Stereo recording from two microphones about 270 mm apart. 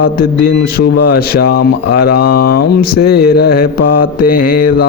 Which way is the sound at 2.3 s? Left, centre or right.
Left.